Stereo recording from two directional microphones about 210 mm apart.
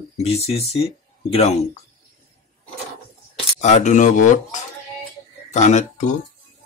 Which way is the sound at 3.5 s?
35° left (ahead or behind).